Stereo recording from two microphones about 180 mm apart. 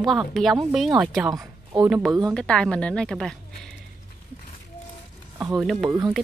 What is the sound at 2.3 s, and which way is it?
A woman's voice, 5° left (ahead or behind).